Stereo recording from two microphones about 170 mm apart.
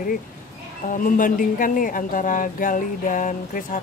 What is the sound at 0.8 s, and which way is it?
Speech, 50° left (ahead or behind).